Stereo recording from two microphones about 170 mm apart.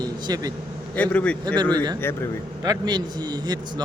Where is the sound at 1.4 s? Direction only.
25° right (ahead or behind).